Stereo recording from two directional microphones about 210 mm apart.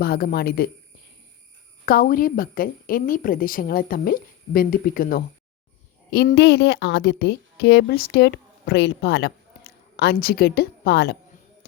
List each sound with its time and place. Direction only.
0.0 s a woman's voice: 45° left (ahead or behind)
1.8 s a woman's voice: 45° left (ahead or behind)